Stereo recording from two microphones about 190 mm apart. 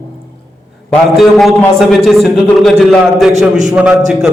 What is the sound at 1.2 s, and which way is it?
A man's voice, centre (ahead or behind).